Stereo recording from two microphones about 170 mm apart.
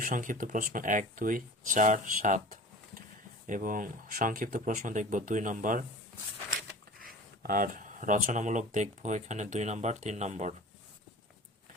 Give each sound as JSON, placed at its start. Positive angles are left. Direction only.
{"t": 0.0, "sound": "speech", "side_deg": -50}
{"t": 7.0, "sound": "speech", "side_deg": -55}